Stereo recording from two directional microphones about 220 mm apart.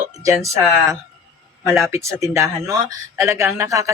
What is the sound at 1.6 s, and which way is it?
Speech, centre (ahead or behind).